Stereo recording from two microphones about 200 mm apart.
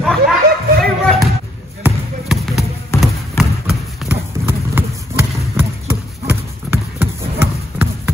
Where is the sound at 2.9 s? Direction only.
Centre (ahead or behind).